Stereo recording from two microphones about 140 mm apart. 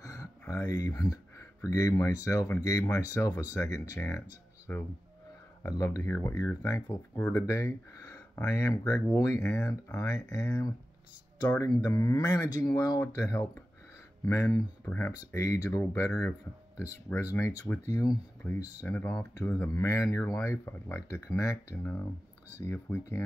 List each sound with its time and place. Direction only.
0.0 s a sound: 25° left (ahead or behind)
0.8 s speech: 25° left (ahead or behind)
9.4 s speech: 5° left (ahead or behind)
9.9 s speech: 25° left (ahead or behind)
11.8 s speech: 25° left (ahead or behind)
18.8 s speech: 15° left (ahead or behind)